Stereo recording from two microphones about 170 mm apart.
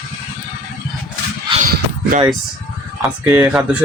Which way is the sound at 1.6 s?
50° right (ahead or behind).